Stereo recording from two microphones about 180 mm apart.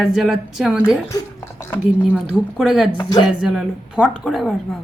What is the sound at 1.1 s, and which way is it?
Speech, 15° left (ahead or behind).